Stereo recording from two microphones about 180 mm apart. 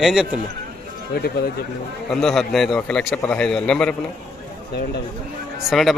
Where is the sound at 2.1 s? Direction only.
Centre (ahead or behind).